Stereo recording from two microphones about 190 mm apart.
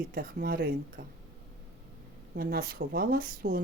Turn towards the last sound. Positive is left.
turn(degrees=-50)  # may be behind; listen again after turning